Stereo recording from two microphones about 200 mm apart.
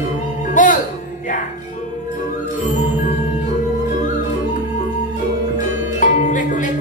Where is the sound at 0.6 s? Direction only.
40° left (ahead or behind).